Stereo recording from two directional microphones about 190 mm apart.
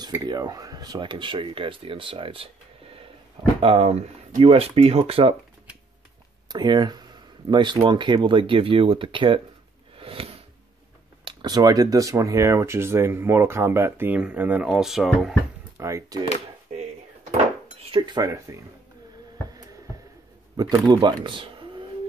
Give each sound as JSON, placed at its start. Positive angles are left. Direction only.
{"t": 0.0, "sound": "speech", "side_deg": -20}
{"t": 6.5, "sound": "speech", "side_deg": -20}
{"t": 9.9, "sound": "a sound", "side_deg": -30}
{"t": 11.2, "sound": "speech", "side_deg": -20}
{"t": 15.8, "sound": "speech", "side_deg": -15}
{"t": 17.9, "sound": "speech", "side_deg": -20}
{"t": 20.5, "sound": "speech", "side_deg": -20}